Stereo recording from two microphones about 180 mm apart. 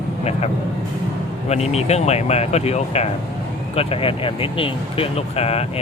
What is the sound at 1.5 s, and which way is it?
Speech, 35° left (ahead or behind).